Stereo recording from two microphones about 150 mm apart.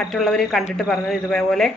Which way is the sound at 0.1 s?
Centre (ahead or behind).